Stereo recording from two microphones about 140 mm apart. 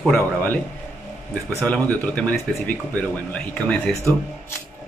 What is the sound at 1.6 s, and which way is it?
Speech, 10° left (ahead or behind).